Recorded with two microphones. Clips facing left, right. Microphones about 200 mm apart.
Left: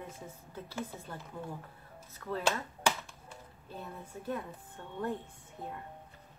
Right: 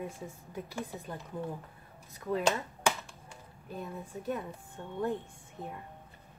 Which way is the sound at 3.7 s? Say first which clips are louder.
Right 4 dB; 15° right (ahead or behind).